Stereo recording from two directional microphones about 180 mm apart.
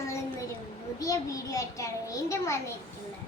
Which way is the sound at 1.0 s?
20° left (ahead or behind).